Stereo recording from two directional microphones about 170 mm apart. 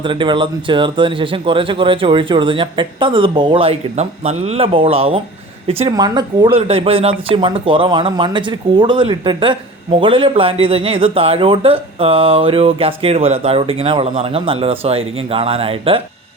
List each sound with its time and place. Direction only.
0.0 s a man's voice: 30° right (ahead or behind)
6.0 s a man's voice: 25° right (ahead or behind)